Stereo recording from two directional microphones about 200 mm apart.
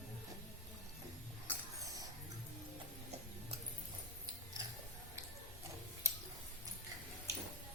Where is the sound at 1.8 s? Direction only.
15° right (ahead or behind).